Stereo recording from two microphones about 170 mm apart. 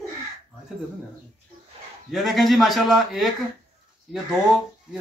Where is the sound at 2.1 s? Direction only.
Centre (ahead or behind).